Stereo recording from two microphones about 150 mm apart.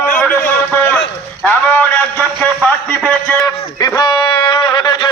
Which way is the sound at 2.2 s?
10° left (ahead or behind).